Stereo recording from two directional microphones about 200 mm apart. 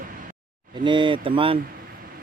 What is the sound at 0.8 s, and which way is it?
Speech, 25° right (ahead or behind).